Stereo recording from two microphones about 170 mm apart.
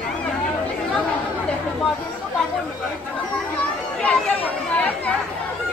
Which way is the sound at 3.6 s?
10° left (ahead or behind).